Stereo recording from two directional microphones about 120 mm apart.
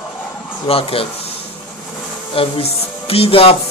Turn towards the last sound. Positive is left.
turn(degrees=50)  # may be behind; listen again after turning